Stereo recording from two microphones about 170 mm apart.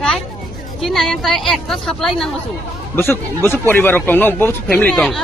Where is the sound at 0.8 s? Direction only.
Centre (ahead or behind).